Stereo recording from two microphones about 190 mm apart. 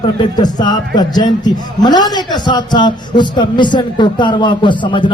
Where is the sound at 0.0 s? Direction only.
25° left (ahead or behind).